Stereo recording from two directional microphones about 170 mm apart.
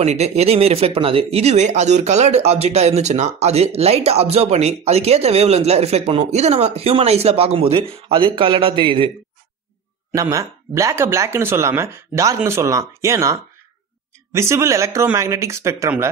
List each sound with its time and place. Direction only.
0.0 s speech: 40° right (ahead or behind)
10.1 s speech: 20° right (ahead or behind)